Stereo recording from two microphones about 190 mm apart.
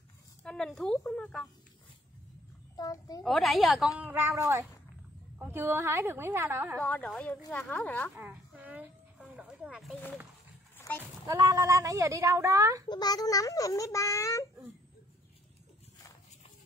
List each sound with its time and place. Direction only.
0.4 s a woman's voice: 5° left (ahead or behind)
2.7 s a child's voice: 20° left (ahead or behind)
3.3 s a woman's voice: centre (ahead or behind)
4.0 s speech: 10° right (ahead or behind)
6.8 s a child's voice: 5° left (ahead or behind)
8.2 s a sound: 10° right (ahead or behind)
11.2 s speech: 15° right (ahead or behind)
12.8 s a child's voice: 20° left (ahead or behind)